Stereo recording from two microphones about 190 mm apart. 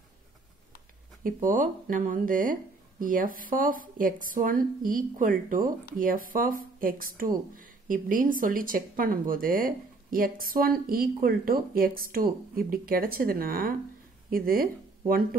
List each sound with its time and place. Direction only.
1.2 s speech: 45° right (ahead or behind)